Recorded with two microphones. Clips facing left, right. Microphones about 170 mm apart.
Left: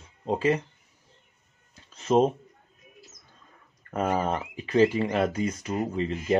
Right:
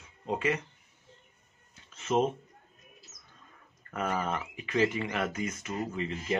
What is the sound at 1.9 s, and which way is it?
Speech, 35° left (ahead or behind).